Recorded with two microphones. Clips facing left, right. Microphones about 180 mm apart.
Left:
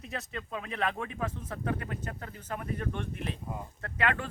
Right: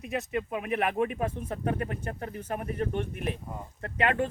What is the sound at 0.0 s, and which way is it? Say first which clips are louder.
Speech: right 8 dB; 15° right (ahead or behind).